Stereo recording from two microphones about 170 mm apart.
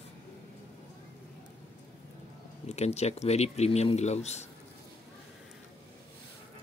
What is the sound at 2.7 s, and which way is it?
Speech, 40° left (ahead or behind).